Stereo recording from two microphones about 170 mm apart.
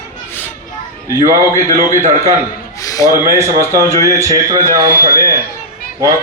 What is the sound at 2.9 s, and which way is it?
Speech, 20° left (ahead or behind).